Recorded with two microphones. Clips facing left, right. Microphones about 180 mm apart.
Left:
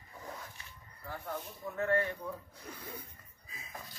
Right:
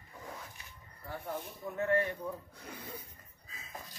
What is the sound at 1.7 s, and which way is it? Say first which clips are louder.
Speech: right 1 dB; 20° right (ahead or behind).